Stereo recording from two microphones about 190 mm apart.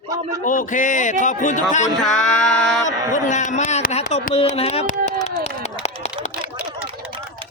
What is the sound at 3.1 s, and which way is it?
Speech, 40° left (ahead or behind).